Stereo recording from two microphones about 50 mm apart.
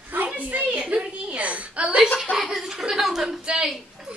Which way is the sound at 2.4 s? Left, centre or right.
Centre.